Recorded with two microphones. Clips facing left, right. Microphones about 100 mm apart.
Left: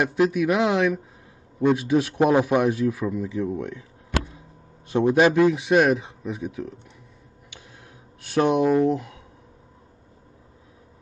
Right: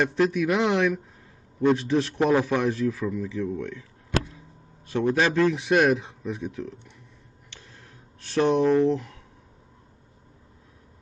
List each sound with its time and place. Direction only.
0.0 s a man's voice: 10° left (ahead or behind)
4.8 s a man's voice: 15° left (ahead or behind)
5.5 s speech: 5° left (ahead or behind)
8.2 s a man's voice: 10° left (ahead or behind)